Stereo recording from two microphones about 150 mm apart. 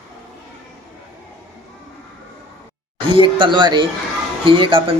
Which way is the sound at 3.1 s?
35° right (ahead or behind).